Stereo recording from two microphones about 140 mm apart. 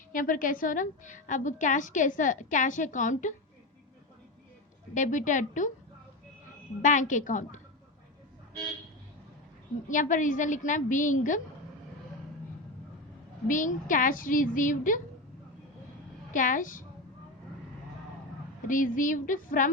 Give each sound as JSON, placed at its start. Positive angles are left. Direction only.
{"t": 0.1, "sound": "a woman's voice", "side_deg": 75}
{"t": 4.9, "sound": "a woman's voice", "side_deg": 65}
{"t": 6.8, "sound": "a woman's voice", "side_deg": 65}
{"t": 9.9, "sound": "a woman's voice", "side_deg": 65}
{"t": 13.5, "sound": "a woman's voice", "side_deg": 65}
{"t": 16.3, "sound": "a woman's voice", "side_deg": 70}
{"t": 18.7, "sound": "a woman's voice", "side_deg": 70}